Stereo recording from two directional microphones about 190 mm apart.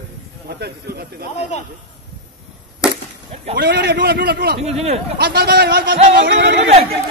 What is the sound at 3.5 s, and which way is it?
A man's voice, 55° right (ahead or behind).